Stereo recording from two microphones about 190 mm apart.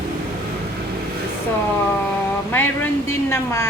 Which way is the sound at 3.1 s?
15° left (ahead or behind).